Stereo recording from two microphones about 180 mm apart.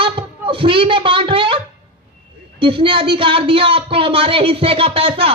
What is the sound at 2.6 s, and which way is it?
Speech, 30° right (ahead or behind).